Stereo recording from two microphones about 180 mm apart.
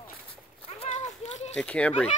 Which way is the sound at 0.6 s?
35° left (ahead or behind).